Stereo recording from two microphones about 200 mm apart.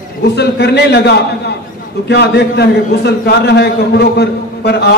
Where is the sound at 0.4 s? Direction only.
55° left (ahead or behind).